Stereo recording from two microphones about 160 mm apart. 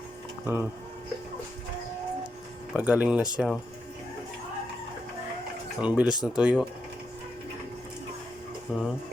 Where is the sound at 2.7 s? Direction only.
10° right (ahead or behind).